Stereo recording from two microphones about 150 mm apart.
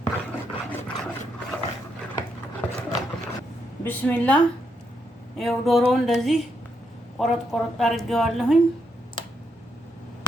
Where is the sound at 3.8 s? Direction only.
10° left (ahead or behind).